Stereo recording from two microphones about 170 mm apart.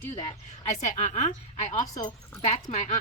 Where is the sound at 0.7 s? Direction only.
45° left (ahead or behind).